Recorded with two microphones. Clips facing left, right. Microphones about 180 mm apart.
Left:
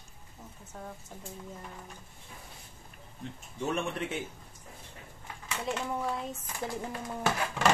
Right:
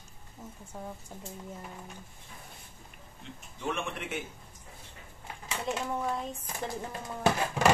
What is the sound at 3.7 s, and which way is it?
Speech, 40° left (ahead or behind).